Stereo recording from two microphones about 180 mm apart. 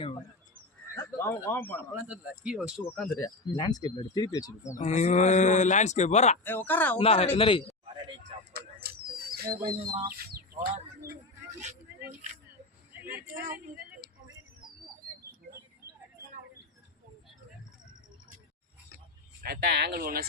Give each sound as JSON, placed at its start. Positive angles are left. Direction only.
{"t": 0.9, "sound": "speech", "side_deg": 15}
{"t": 2.0, "sound": "speech", "side_deg": -5}
{"t": 3.2, "sound": "speech", "side_deg": 20}
{"t": 4.8, "sound": "speech", "side_deg": 40}
{"t": 6.7, "sound": "speech", "side_deg": 10}
{"t": 7.0, "sound": "speech", "side_deg": 35}
{"t": 8.5, "sound": "a sound", "side_deg": -60}
{"t": 9.6, "sound": "speech", "side_deg": -25}
{"t": 10.1, "sound": "speech", "side_deg": -60}
{"t": 12.9, "sound": "a sound", "side_deg": -10}
{"t": 13.3, "sound": "speech", "side_deg": -50}
{"t": 19.4, "sound": "speech", "side_deg": -60}